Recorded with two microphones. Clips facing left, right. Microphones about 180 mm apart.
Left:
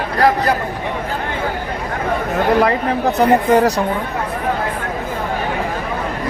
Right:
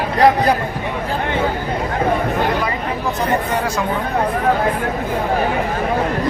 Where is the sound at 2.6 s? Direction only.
70° left (ahead or behind).